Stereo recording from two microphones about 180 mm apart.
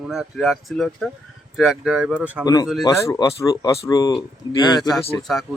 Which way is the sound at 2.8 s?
20° left (ahead or behind).